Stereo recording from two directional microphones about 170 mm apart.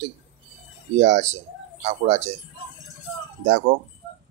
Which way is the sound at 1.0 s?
40° right (ahead or behind).